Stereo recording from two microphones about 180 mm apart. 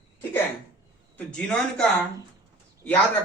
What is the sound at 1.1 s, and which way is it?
Speech, 5° left (ahead or behind).